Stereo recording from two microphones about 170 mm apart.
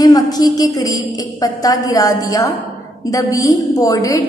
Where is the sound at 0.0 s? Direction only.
20° left (ahead or behind).